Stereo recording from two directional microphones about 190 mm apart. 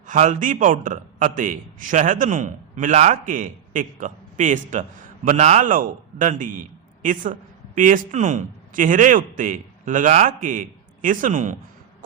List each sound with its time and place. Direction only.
0.1 s a man's voice: 40° right (ahead or behind)